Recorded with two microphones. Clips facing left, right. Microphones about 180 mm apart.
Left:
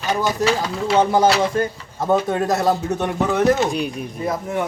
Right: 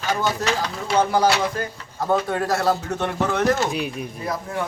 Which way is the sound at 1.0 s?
20° left (ahead or behind).